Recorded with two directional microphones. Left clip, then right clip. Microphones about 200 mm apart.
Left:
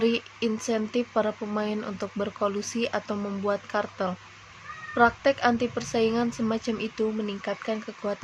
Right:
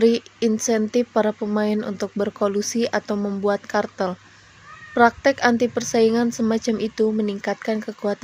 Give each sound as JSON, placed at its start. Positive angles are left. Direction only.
{"t": 0.0, "sound": "speech", "side_deg": -25}